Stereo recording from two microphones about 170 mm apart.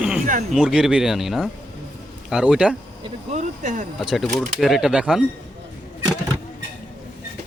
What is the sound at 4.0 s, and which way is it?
Speech, centre (ahead or behind).